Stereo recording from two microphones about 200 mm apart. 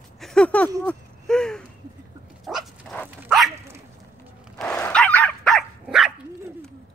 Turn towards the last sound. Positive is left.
turn(degrees=0)  # may be behind; listen again after turning